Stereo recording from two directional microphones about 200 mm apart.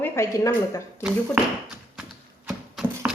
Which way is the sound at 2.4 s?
5° right (ahead or behind).